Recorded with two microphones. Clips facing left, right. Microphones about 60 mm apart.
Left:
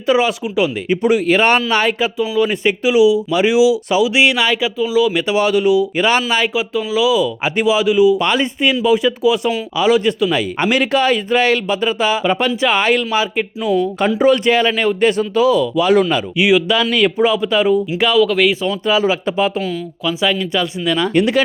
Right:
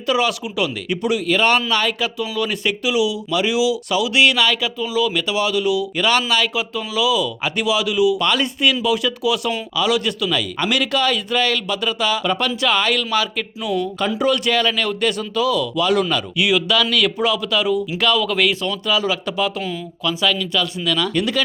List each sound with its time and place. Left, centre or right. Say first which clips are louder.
0.1 s a man's voice: left 4 dB; left
1.0 s speech: left 4 dB; left
2.1 s a man's voice: left 6 dB; centre
5.1 s a man's voice: left 5 dB; left
17.9 s speech: left 3 dB; centre
18.2 s speech: left 6 dB; centre
20.2 s a man's voice: left 3 dB; left